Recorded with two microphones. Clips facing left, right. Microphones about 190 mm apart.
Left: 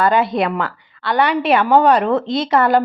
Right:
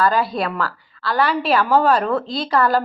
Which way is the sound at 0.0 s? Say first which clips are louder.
Left 3 dB; 20° left (ahead or behind).